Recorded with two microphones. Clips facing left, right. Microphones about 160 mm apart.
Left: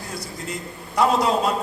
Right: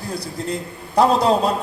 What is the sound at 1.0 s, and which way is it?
Speech, 30° right (ahead or behind).